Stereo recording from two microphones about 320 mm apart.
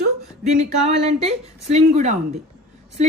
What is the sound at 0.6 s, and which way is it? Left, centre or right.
A woman's voice, right.